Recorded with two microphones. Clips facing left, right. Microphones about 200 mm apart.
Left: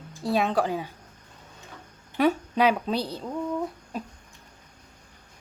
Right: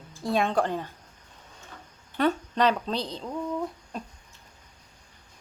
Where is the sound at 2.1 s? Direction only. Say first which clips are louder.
Left 2 dB; 10° left (ahead or behind).